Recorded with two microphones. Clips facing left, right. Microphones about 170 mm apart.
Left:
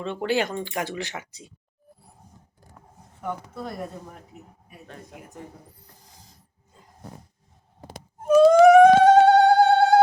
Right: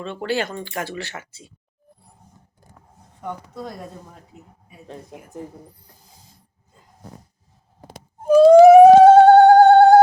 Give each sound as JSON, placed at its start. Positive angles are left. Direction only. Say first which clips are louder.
{"t": 0.0, "sound": "speech", "louder": "even", "side_deg": 15}
{"t": 3.2, "sound": "speech", "louder": "even", "side_deg": 5}
{"t": 8.2, "sound": "a sound", "louder": "right 5 dB", "side_deg": -30}